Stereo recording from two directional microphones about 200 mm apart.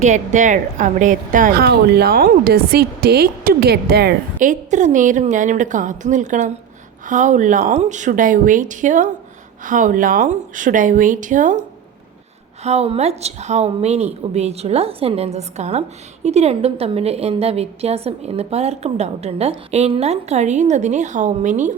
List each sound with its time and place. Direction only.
0.0 s a woman's voice: 35° right (ahead or behind)
12.6 s a woman's voice: 30° right (ahead or behind)